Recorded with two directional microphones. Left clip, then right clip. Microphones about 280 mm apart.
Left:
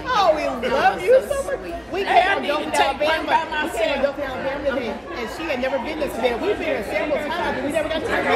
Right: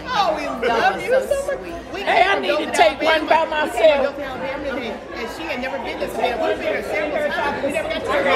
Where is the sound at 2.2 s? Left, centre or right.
Right.